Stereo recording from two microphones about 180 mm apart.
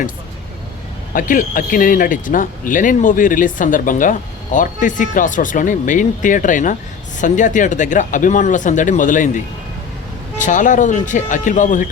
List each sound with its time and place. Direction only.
1.1 s speech: 50° left (ahead or behind)